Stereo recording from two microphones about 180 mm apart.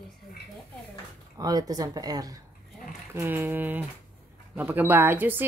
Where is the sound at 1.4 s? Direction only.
20° right (ahead or behind).